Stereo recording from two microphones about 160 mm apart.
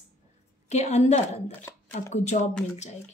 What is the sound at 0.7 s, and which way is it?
A woman's voice, 45° left (ahead or behind).